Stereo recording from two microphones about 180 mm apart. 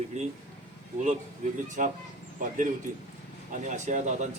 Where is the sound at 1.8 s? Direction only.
45° right (ahead or behind).